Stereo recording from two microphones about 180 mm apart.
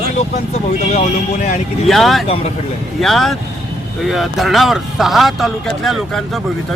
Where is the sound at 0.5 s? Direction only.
40° left (ahead or behind).